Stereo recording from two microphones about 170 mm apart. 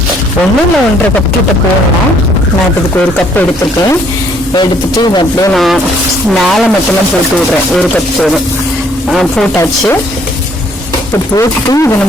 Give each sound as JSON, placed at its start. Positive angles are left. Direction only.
{"t": 4.5, "sound": "speech", "side_deg": 25}
{"t": 5.5, "sound": "speech", "side_deg": 0}
{"t": 7.8, "sound": "speech", "side_deg": 5}
{"t": 9.6, "sound": "speech", "side_deg": 15}
{"t": 11.3, "sound": "speech", "side_deg": 20}